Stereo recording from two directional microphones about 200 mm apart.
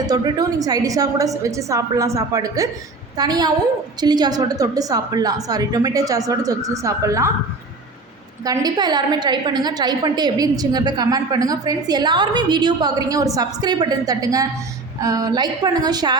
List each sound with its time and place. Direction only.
0.1 s a woman's voice: 20° right (ahead or behind)
8.4 s a woman's voice: 20° right (ahead or behind)